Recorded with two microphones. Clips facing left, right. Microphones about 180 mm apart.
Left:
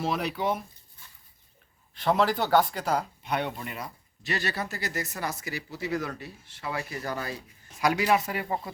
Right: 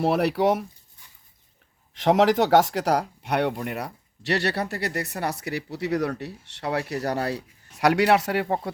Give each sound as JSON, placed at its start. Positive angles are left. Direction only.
{"t": 0.0, "sound": "speech", "side_deg": -65}
{"t": 1.9, "sound": "speech", "side_deg": -80}